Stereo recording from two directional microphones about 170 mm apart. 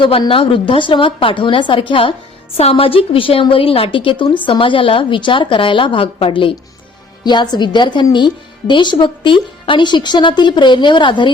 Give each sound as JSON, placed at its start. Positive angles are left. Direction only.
{"t": 0.0, "sound": "a woman's voice", "side_deg": 30}